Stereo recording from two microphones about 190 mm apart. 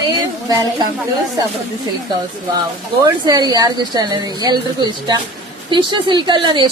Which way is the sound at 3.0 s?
20° right (ahead or behind).